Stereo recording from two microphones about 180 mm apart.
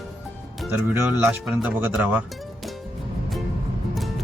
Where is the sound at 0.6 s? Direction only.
10° right (ahead or behind).